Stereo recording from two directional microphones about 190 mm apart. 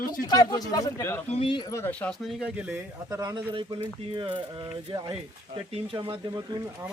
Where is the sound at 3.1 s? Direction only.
20° right (ahead or behind).